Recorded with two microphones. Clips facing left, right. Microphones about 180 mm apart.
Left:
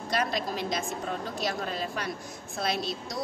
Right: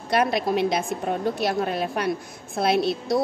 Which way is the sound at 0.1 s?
65° right (ahead or behind).